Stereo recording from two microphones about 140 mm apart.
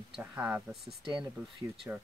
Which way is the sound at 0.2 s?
15° right (ahead or behind).